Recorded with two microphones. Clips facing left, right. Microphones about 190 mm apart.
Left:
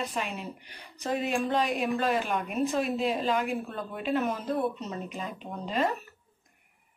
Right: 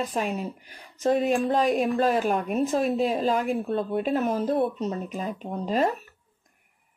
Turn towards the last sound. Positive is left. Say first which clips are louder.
# right 5 dB
turn(degrees=-40)  # may be behind; listen again after turning